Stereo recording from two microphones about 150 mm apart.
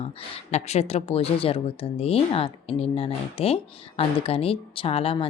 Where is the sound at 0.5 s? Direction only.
45° left (ahead or behind).